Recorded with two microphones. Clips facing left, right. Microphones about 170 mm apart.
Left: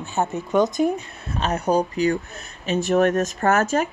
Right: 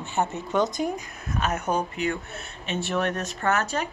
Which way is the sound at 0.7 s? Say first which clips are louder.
Left 7 dB; 25° left (ahead or behind).